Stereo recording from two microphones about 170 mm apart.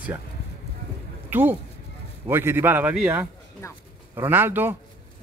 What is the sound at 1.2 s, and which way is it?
A man's voice, 10° right (ahead or behind).